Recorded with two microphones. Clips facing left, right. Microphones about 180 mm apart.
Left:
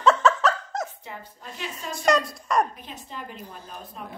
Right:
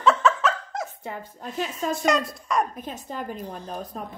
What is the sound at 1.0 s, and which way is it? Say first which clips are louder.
Speech: right 5 dB; 45° right (ahead or behind).